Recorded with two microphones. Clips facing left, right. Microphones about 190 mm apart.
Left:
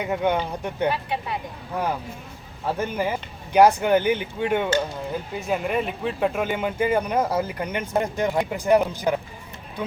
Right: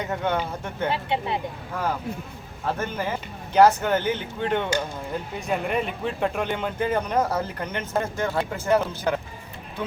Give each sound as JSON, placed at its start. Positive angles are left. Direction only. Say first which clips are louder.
{"t": 0.0, "sound": "speech", "louder": "left 3 dB", "side_deg": 10}
{"t": 0.9, "sound": "speech", "louder": "right 3 dB", "side_deg": -25}
{"t": 1.7, "sound": "speech", "louder": "left 1 dB", "side_deg": 20}